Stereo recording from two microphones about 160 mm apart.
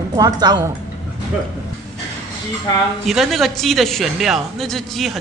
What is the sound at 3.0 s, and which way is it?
A woman's voice, centre (ahead or behind).